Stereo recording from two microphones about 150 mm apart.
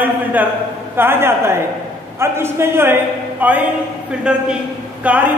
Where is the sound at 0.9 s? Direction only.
15° right (ahead or behind).